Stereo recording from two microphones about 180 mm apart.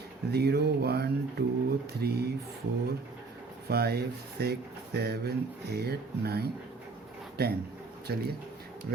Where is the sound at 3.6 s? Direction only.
60° right (ahead or behind).